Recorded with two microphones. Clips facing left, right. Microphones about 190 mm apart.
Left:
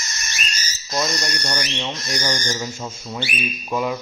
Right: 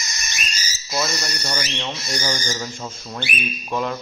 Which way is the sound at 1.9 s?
10° right (ahead or behind).